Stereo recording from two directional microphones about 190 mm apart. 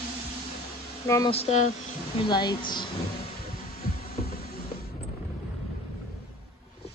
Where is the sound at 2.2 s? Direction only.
25° left (ahead or behind).